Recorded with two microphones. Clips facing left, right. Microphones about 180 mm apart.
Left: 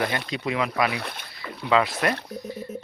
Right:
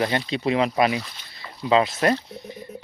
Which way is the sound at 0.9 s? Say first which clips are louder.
Right 3 dB; 60° left (ahead or behind).